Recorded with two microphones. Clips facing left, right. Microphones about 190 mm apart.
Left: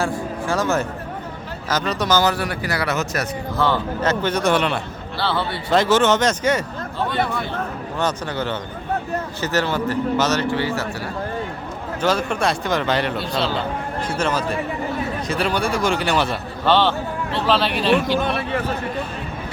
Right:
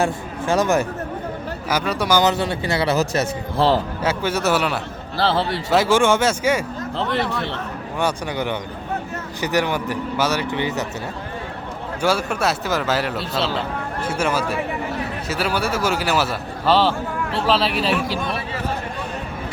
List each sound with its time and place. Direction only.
0.0 s a man's voice: 20° right (ahead or behind)
4.0 s speech: 10° right (ahead or behind)
7.9 s speech: 15° right (ahead or behind)
12.0 s a man's voice: 10° right (ahead or behind)